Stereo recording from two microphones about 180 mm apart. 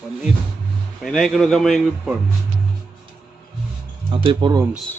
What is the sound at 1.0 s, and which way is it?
A man's voice, centre (ahead or behind).